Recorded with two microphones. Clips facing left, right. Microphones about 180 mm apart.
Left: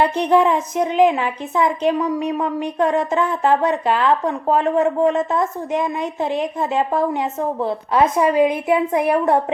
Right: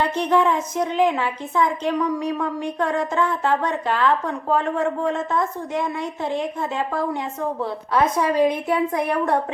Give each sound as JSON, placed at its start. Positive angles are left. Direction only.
{"t": 0.2, "sound": "a woman's voice", "side_deg": 15}